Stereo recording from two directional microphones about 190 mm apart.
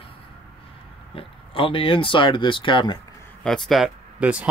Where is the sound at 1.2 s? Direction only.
30° left (ahead or behind).